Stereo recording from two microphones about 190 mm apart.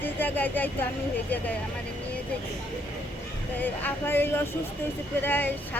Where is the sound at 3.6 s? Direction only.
10° left (ahead or behind).